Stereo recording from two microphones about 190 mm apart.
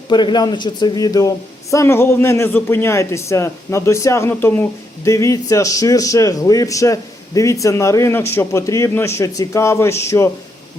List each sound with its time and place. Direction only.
0.1 s a man's voice: 25° left (ahead or behind)